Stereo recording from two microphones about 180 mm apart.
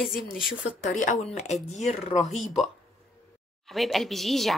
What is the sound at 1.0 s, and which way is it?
Speech, 40° left (ahead or behind).